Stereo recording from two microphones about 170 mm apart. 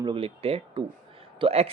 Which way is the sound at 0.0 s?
30° right (ahead or behind).